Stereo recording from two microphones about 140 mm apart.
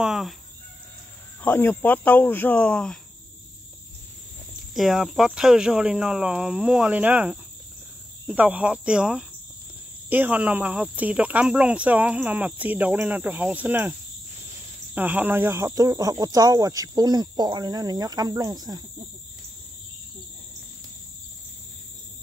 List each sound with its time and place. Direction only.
0.0 s chicken: 5° right (ahead or behind)
1.4 s speech: 15° left (ahead or behind)
4.7 s speech: centre (ahead or behind)
15.0 s speech: 10° right (ahead or behind); by 18.8 s 30° right (ahead or behind)